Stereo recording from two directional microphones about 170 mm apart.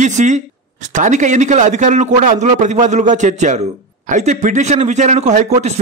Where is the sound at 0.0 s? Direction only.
45° right (ahead or behind).